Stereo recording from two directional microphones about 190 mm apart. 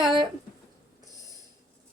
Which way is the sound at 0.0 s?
25° right (ahead or behind).